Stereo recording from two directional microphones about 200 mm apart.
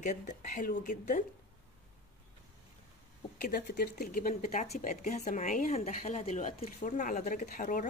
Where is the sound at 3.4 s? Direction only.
45° left (ahead or behind).